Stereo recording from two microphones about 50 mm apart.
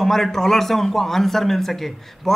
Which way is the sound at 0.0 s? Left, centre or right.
Centre.